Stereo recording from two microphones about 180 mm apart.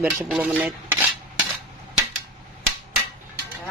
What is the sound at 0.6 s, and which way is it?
Cutlery, 10° right (ahead or behind).